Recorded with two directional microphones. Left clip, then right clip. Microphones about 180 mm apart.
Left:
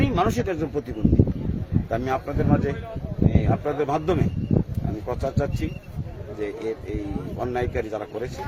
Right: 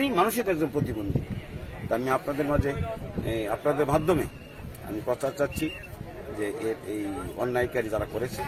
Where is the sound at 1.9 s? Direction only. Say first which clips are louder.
Even; 30° left (ahead or behind).